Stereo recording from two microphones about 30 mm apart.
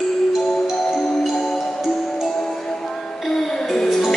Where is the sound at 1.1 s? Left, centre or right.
Centre.